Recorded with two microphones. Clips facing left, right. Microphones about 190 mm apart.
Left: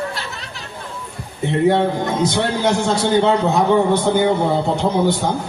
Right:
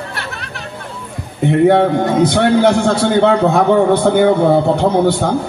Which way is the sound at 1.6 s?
60° right (ahead or behind).